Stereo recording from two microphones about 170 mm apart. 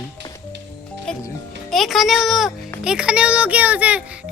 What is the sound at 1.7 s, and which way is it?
Speech, centre (ahead or behind).